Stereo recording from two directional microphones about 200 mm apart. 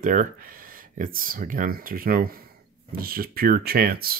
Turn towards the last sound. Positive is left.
turn(degrees=-50)  # may be behind; listen again after turning